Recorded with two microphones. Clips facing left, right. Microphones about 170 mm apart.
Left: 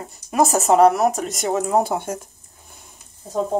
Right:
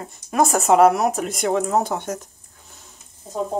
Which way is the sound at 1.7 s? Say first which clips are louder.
Left 2 dB; 10° left (ahead or behind).